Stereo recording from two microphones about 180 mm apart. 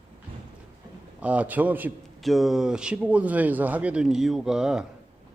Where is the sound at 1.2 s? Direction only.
5° right (ahead or behind).